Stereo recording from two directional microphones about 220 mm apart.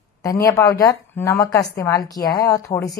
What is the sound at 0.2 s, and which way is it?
Speech, 15° left (ahead or behind).